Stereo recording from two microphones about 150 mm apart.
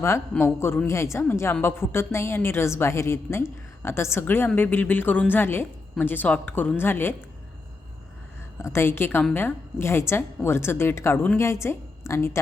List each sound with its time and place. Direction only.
0.0 s a woman's voice: 15° left (ahead or behind)
8.6 s a woman's voice: 15° left (ahead or behind)